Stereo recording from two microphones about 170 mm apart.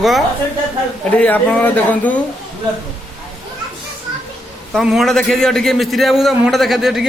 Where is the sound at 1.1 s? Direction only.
10° left (ahead or behind).